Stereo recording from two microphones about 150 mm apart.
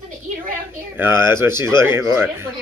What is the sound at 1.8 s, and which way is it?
Speech, 15° right (ahead or behind).